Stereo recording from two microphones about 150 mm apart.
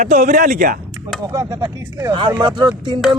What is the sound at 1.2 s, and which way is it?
Speech, 25° right (ahead or behind).